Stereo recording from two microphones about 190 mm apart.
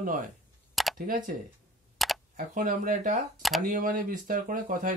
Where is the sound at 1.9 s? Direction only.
Centre (ahead or behind).